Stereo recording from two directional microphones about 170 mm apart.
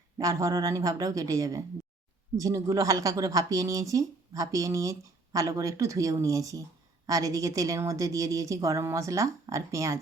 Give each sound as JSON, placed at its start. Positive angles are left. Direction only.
{"t": 0.2, "sound": "a woman's voice", "side_deg": -20}